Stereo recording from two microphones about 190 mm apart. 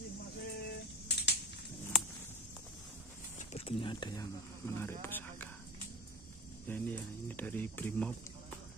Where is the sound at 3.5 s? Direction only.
30° left (ahead or behind); by 5.5 s 10° left (ahead or behind).